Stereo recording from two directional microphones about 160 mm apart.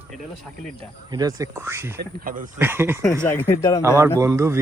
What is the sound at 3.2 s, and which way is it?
Speech, 15° left (ahead or behind).